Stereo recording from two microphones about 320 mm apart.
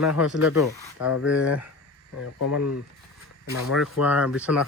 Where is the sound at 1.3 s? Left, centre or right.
Centre.